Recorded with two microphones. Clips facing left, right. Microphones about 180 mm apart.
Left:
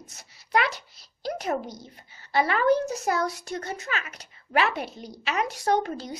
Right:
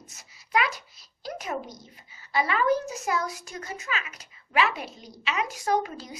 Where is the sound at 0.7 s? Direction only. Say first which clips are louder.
Left 1 dB; 70° left (ahead or behind).